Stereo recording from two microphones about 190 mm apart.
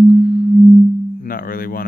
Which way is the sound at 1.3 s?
50° left (ahead or behind).